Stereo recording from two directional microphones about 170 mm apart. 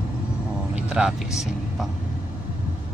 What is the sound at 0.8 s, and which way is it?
Speech, 5° right (ahead or behind).